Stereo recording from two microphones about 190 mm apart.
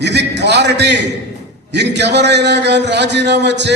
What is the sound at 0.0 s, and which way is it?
A man's voice, 65° right (ahead or behind).